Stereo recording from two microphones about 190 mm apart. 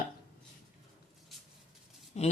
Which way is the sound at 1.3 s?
Centre (ahead or behind).